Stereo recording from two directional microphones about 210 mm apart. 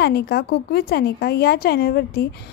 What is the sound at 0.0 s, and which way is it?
A woman's voice, 50° left (ahead or behind).